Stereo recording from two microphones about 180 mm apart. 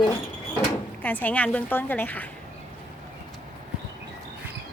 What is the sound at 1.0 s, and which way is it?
A woman's voice, 10° left (ahead or behind).